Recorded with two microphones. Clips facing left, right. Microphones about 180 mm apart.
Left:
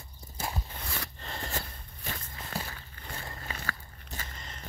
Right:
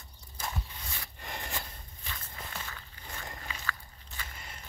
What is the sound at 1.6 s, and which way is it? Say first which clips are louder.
Walk: left 3 dB; 45° left (ahead or behind).